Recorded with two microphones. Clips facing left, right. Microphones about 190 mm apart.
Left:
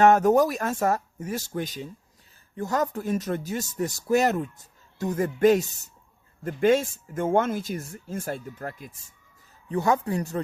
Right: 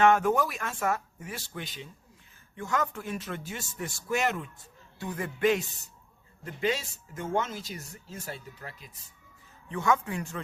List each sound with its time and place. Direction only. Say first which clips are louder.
0.0 s speech: left 5 dB; 40° left (ahead or behind)
9.6 s speech: left 4 dB; 35° left (ahead or behind)